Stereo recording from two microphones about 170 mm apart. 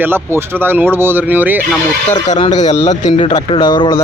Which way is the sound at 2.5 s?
45° left (ahead or behind).